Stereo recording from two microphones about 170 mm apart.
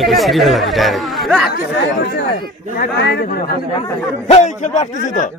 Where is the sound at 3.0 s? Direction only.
90° left.